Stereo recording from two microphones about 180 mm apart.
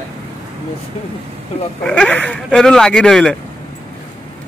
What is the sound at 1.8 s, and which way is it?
Speech, 5° left (ahead or behind).